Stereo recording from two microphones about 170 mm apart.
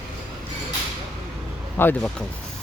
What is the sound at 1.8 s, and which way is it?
Speech, 10° left (ahead or behind).